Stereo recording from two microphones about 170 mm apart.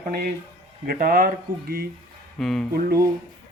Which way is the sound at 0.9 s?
55° right (ahead or behind).